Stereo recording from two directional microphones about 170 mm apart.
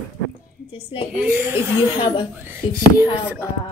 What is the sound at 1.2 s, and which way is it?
Speech, 10° right (ahead or behind).